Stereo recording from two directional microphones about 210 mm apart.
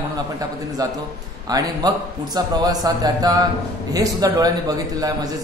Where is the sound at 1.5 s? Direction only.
15° right (ahead or behind).